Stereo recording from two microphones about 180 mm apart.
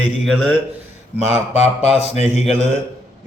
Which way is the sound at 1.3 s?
35° left (ahead or behind).